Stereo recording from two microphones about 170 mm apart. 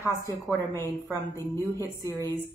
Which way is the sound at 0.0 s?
15° left (ahead or behind).